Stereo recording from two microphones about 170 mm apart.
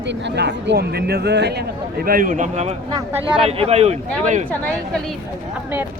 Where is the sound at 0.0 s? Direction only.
90° right; by 4.4 s 45° right (ahead or behind).